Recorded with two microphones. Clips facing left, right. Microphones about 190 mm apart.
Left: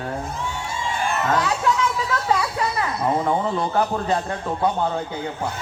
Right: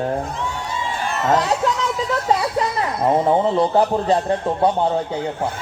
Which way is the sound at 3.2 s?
30° right (ahead or behind).